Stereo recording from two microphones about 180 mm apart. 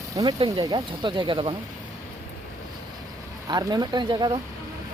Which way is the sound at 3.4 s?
20° right (ahead or behind).